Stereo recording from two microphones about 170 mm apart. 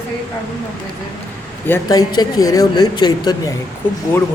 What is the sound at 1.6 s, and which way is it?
Speech, 15° left (ahead or behind).